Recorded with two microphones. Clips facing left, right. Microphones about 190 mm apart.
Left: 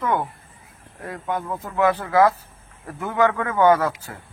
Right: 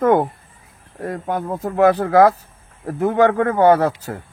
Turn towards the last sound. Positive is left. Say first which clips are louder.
# right 4 dB
turn(degrees=-35)  # may be behind; listen again after turning